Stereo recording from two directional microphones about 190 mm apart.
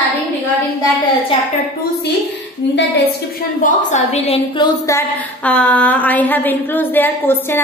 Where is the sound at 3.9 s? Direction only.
35° left (ahead or behind); by 5.0 s 20° left (ahead or behind).